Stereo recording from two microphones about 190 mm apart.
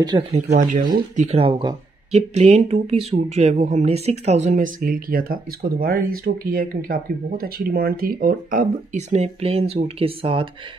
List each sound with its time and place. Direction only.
0.0 s speech: 30° right (ahead or behind)
0.5 s speech: 50° right (ahead or behind); by 10.5 s 30° right (ahead or behind)